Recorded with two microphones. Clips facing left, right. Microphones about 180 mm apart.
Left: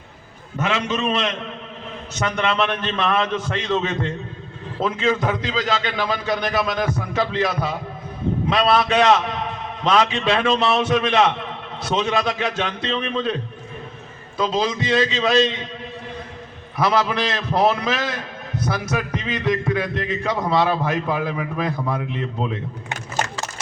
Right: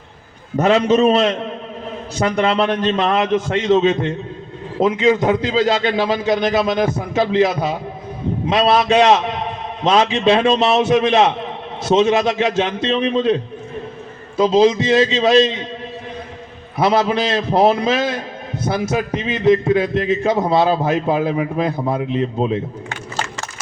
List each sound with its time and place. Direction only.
0.5 s a man's voice: 40° right (ahead or behind); by 5.6 s 20° right (ahead or behind)
5.6 s a man's voice: 35° right (ahead or behind)
5.9 s a man's voice: 25° right (ahead or behind)
14.3 s a man's voice: 25° right (ahead or behind)
16.7 s a man's voice: 25° right (ahead or behind)